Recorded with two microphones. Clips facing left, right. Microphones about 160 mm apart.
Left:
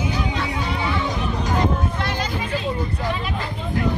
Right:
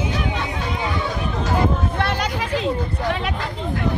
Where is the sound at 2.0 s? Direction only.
65° right (ahead or behind).